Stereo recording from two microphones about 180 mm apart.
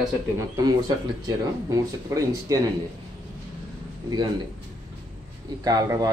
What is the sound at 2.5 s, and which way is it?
Speech, 20° right (ahead or behind).